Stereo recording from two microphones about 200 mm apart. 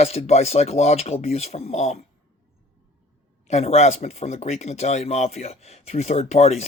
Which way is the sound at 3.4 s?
30° left (ahead or behind).